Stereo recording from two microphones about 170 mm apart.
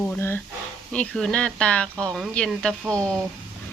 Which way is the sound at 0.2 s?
15° left (ahead or behind).